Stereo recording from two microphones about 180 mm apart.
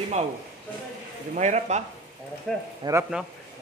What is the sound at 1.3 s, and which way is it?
Speech, 40° right (ahead or behind).